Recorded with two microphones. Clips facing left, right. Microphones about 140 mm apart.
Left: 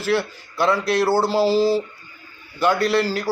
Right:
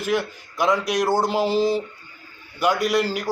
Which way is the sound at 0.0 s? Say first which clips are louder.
Left 2 dB; 15° right (ahead or behind).